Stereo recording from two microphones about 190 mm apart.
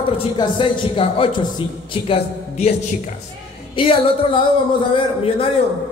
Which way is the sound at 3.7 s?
25° left (ahead or behind).